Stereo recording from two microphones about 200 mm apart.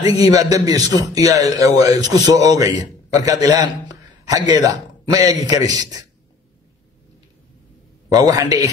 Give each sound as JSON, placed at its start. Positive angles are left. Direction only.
{"t": 0.0, "sound": "a man's voice", "side_deg": -20}
{"t": 8.1, "sound": "a man's voice", "side_deg": -20}